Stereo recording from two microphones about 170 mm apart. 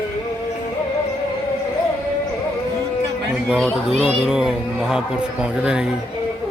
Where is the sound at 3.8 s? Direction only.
5° right (ahead or behind).